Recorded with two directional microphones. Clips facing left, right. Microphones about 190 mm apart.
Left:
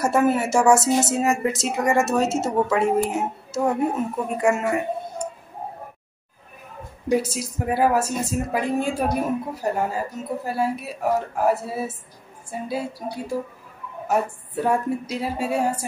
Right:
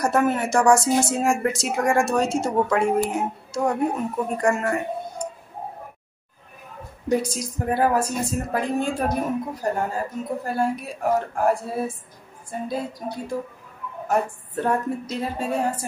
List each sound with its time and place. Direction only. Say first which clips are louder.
0.0 s a woman's voice: left 1 dB; 5° left (ahead or behind)
7.1 s a woman's voice: left 1 dB; 5° left (ahead or behind)
14.0 s a woman's voice: even; 5° left (ahead or behind)